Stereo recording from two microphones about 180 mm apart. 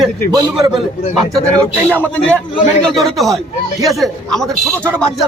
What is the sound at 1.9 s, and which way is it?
A man's voice, 10° left (ahead or behind).